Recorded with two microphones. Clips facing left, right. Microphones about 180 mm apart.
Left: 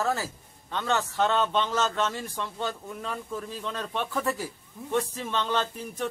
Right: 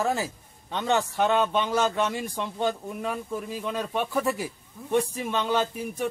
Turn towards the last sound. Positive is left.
turn(degrees=-10)  # may be behind; listen again after turning